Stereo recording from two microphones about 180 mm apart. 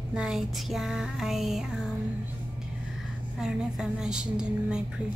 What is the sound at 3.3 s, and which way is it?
Music, 5° right (ahead or behind).